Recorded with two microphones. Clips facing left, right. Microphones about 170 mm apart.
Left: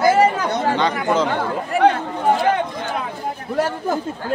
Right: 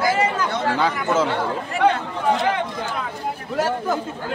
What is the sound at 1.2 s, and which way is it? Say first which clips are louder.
Speech: left 2 dB; 45° left (ahead or behind).